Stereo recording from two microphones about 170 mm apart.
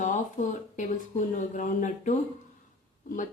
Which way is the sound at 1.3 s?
50° left (ahead or behind).